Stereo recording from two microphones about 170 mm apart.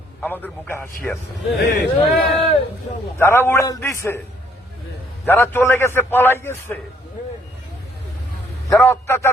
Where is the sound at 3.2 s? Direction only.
15° left (ahead or behind).